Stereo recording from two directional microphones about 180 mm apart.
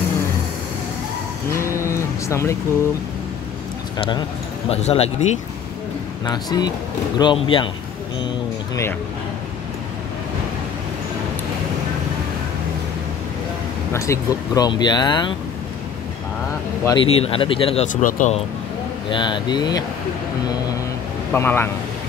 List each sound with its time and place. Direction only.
1.5 s cattle: 15° left (ahead or behind)
4.6 s speech: 35° left (ahead or behind)
6.2 s speech: 25° left (ahead or behind)
13.9 s speech: 15° left (ahead or behind)
16.8 s speech: 25° left (ahead or behind)
18.0 s speech: 45° left (ahead or behind)
19.0 s speech: 25° left (ahead or behind)
21.3 s speech: 10° left (ahead or behind)